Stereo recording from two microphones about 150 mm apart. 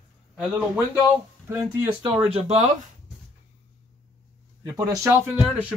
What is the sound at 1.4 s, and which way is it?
Speech, 20° right (ahead or behind).